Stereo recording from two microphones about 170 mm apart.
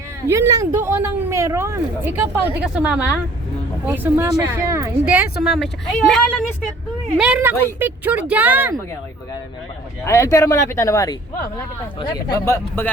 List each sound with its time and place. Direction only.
0.3 s a woman's voice: 20° right (ahead or behind)
10.0 s speech: 15° left (ahead or behind)
12.5 s speech: 15° left (ahead or behind)